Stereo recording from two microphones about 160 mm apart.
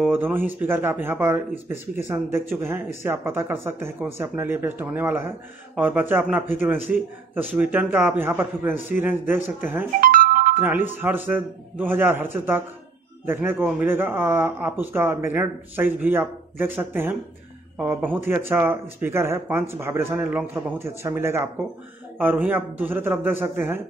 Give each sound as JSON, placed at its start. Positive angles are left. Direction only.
{"t": 0.1, "sound": "speech", "side_deg": -10}
{"t": 10.1, "sound": "music", "side_deg": -60}
{"t": 10.6, "sound": "speech", "side_deg": -10}